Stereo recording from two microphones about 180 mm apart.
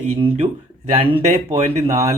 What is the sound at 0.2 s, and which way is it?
Speech, 35° right (ahead or behind).